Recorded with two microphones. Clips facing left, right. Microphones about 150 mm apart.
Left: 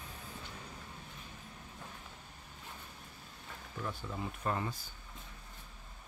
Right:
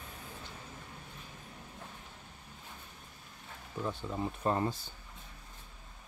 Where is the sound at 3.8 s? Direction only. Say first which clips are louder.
Right 5 dB; 20° right (ahead or behind).